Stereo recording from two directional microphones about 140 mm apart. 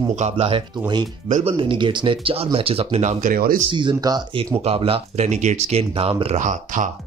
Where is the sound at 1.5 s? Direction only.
35° right (ahead or behind).